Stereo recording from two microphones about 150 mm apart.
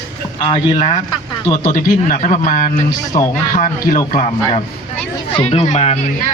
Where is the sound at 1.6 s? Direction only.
65° left (ahead or behind).